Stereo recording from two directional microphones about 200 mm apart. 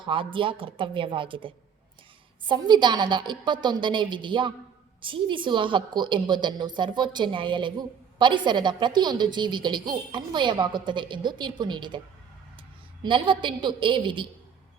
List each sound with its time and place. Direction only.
0.0 s a woman's voice: 25° right (ahead or behind)
13.0 s a woman's voice: 25° right (ahead or behind)